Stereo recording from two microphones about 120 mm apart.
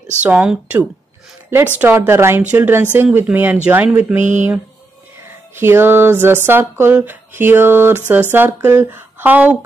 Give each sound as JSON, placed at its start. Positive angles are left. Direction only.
{"t": 0.2, "sound": "a woman's voice", "side_deg": -10}
{"t": 1.8, "sound": "a sound", "side_deg": -15}
{"t": 2.5, "sound": "a woman's voice", "side_deg": -15}
{"t": 4.2, "sound": "speech", "side_deg": -90}
{"t": 5.6, "sound": "a sound", "side_deg": -20}
{"t": 8.1, "sound": "a woman's voice", "side_deg": -15}